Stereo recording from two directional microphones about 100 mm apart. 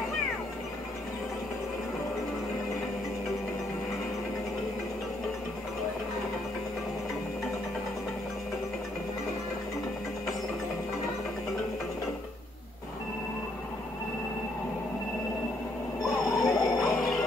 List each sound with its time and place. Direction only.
16.0 s music: 35° left (ahead or behind)